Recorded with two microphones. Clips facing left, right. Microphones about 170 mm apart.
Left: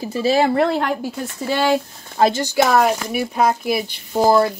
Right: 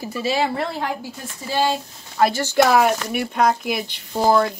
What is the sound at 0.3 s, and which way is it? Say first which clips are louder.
Speech: left 7 dB; 55° left (ahead or behind).